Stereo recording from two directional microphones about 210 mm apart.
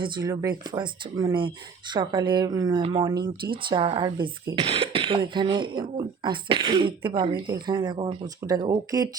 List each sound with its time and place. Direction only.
0.0 s speech: 20° right (ahead or behind)